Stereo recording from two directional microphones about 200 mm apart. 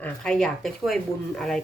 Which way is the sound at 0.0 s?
5° left (ahead or behind).